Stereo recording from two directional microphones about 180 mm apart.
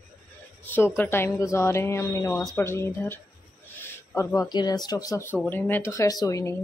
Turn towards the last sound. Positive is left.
turn(degrees=20)  # may be behind; listen again after turning